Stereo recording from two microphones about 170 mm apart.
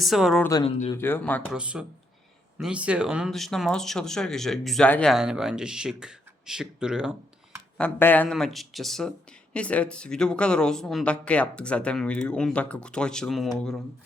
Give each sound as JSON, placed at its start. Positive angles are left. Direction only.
{"t": 0.0, "sound": "speech", "side_deg": 0}
{"t": 0.6, "sound": "speech", "side_deg": 35}
{"t": 0.9, "sound": "speech", "side_deg": 10}
{"t": 1.5, "sound": "speech", "side_deg": -5}
{"t": 7.8, "sound": "speech", "side_deg": 10}